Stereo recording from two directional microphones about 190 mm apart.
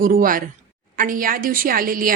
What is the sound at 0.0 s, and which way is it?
A woman's voice, 45° right (ahead or behind).